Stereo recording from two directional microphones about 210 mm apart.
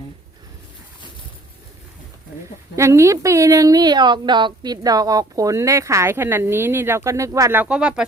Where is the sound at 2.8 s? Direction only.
15° right (ahead or behind).